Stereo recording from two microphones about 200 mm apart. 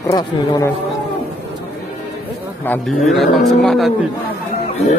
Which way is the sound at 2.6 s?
5° left (ahead or behind).